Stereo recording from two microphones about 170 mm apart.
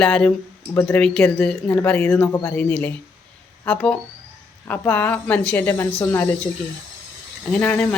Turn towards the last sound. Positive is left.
turn(degrees=10)  # may be behind; listen again after turning